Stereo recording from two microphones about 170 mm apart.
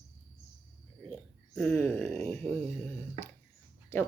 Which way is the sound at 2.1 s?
40° right (ahead or behind).